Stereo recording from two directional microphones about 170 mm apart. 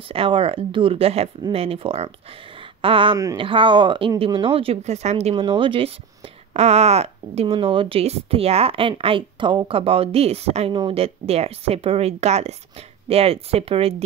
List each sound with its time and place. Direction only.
0.1 s speech: 35° right (ahead or behind)